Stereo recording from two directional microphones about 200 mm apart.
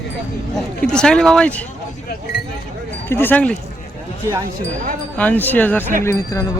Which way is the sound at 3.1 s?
10° left (ahead or behind).